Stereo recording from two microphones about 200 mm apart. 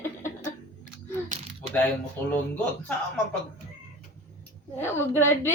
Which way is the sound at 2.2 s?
10° left (ahead or behind).